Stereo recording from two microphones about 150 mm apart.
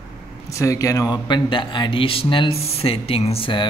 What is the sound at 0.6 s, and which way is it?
Speech, 20° left (ahead or behind).